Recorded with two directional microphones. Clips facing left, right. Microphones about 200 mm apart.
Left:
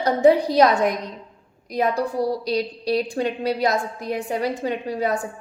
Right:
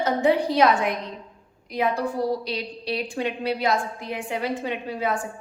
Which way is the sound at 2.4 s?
40° left (ahead or behind).